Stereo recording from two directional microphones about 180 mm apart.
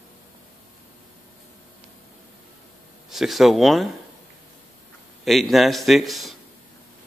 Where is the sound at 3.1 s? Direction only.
Centre (ahead or behind).